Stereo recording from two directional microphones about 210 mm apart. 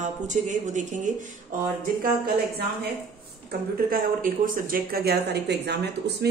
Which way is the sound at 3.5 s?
40° right (ahead or behind).